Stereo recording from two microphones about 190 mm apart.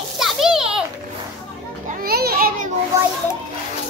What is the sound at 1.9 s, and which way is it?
Children playing, 50° right (ahead or behind).